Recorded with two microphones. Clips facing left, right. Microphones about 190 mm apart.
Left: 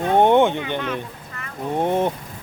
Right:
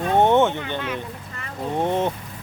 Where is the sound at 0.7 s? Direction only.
10° right (ahead or behind).